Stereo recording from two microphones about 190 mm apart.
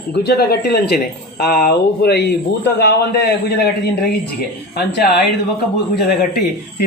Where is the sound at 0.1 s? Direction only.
60° left (ahead or behind).